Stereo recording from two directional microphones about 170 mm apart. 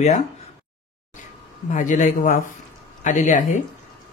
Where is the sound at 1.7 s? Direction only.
45° left (ahead or behind).